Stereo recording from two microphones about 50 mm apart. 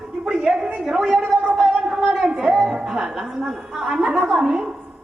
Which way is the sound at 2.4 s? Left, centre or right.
Centre.